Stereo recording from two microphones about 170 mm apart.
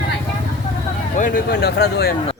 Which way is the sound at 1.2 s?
55° left (ahead or behind).